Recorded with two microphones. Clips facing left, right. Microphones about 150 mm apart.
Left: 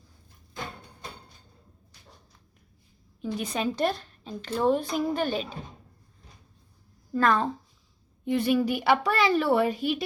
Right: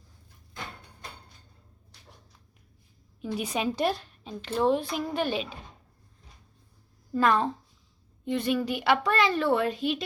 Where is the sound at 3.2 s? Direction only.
10° right (ahead or behind).